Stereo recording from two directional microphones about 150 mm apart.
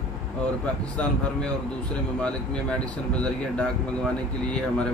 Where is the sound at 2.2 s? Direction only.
5° left (ahead or behind).